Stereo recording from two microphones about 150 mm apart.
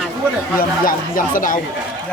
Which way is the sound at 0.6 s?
65° left (ahead or behind).